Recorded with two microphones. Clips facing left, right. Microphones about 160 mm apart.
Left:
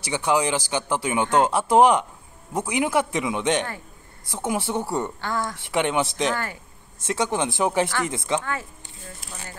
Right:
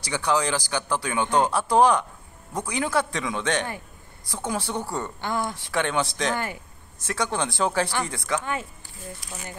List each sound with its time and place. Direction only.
0.1 s a man's voice: 15° left (ahead or behind)
5.2 s speech: 15° right (ahead or behind)
5.7 s speech: 20° left (ahead or behind)
6.3 s speech: 15° right (ahead or behind)
7.1 s a man's voice: 20° left (ahead or behind)